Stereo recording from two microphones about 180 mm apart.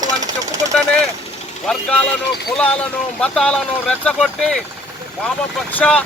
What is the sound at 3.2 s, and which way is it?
Speech, 5° left (ahead or behind).